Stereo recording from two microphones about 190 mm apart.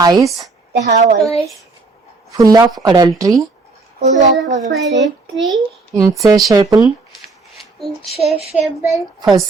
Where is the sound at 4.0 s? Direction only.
40° right (ahead or behind).